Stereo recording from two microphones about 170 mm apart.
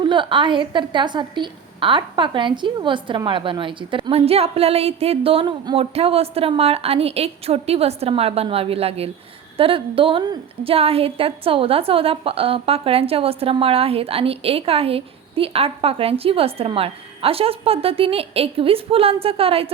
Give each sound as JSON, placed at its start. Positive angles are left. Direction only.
{"t": 0.0, "sound": "a woman's voice", "side_deg": -30}